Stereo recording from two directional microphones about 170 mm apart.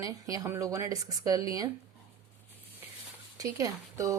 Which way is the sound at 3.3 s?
20° right (ahead or behind).